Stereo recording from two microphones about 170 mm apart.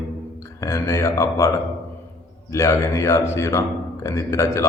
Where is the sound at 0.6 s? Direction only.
20° left (ahead or behind).